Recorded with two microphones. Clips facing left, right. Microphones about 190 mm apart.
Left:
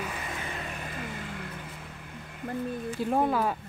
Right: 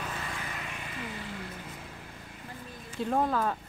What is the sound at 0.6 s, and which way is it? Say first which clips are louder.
Vehicle: left 3 dB; 50° left (ahead or behind).